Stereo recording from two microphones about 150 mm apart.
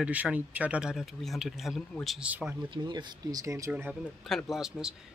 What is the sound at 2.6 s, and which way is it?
Speech, 30° right (ahead or behind).